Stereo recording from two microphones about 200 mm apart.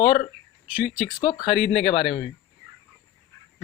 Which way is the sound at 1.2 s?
25° left (ahead or behind).